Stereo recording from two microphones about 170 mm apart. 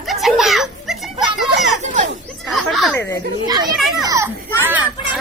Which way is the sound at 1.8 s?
45° right (ahead or behind).